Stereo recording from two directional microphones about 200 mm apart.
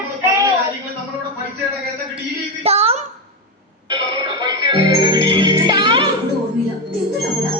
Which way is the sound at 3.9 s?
25° right (ahead or behind).